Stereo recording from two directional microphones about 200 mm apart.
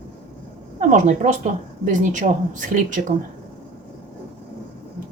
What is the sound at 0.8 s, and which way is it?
A woman's voice, 40° right (ahead or behind).